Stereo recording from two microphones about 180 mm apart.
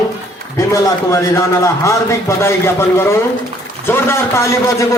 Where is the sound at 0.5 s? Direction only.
15° left (ahead or behind).